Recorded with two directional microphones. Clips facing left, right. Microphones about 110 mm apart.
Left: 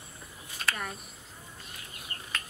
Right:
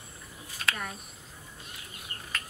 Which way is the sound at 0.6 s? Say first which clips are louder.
Even; centre (ahead or behind).